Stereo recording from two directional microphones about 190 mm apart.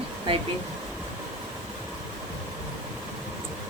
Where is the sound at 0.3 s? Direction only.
30° right (ahead or behind).